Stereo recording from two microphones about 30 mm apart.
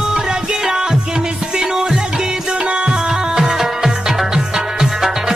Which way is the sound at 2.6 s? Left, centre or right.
Right.